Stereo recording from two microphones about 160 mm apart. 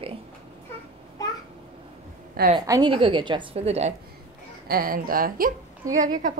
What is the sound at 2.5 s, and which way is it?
A woman's voice, 25° right (ahead or behind).